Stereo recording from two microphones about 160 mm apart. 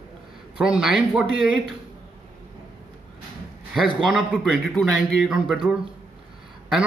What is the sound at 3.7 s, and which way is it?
A man's voice, centre (ahead or behind).